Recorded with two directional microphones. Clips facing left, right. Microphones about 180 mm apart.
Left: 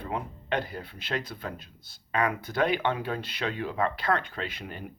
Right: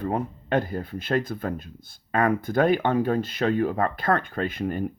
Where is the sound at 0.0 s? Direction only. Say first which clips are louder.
Right 7 dB; 45° right (ahead or behind).